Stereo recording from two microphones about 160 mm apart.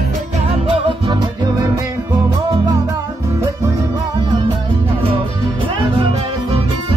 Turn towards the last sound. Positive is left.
turn(degrees=-30)  # may be behind; listen again after turning